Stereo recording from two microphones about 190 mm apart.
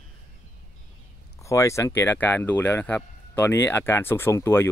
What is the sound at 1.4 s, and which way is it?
Speech, 15° left (ahead or behind).